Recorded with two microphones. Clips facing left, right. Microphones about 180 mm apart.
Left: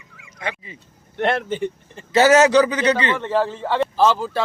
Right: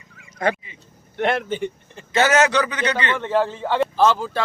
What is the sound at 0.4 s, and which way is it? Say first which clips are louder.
Speech: right 8 dB; 45° right (ahead or behind).